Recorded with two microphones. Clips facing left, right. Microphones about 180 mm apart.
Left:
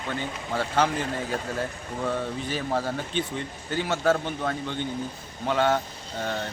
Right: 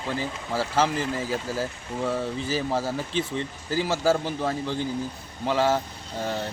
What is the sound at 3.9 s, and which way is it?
Speech, 5° right (ahead or behind).